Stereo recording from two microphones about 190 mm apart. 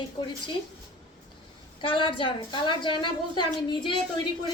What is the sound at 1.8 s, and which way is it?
A woman's voice, 25° left (ahead or behind).